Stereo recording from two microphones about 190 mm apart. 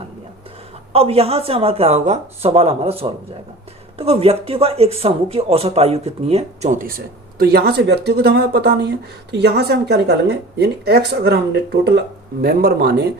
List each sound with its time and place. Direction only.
0.9 s speech: 30° right (ahead or behind)
3.9 s speech: 30° right (ahead or behind)
7.3 s speech: 55° right (ahead or behind)